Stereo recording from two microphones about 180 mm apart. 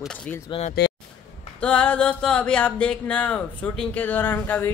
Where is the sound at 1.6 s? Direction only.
5° left (ahead or behind).